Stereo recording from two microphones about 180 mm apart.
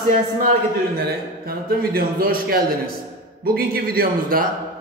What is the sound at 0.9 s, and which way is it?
A man's voice, 60° right (ahead or behind).